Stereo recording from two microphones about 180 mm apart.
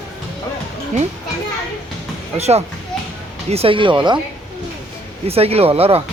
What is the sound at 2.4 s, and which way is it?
Speech, 35° right (ahead or behind).